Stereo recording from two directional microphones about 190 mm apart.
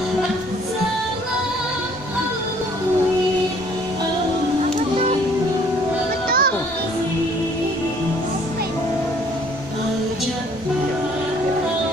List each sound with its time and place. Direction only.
6.2 s music: 50° right (ahead or behind)